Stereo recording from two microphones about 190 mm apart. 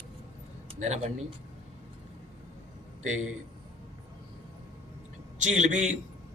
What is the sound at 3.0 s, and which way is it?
Speech, 40° right (ahead or behind).